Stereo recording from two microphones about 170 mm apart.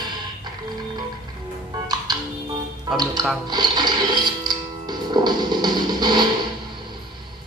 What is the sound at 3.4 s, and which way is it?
Music, 25° right (ahead or behind).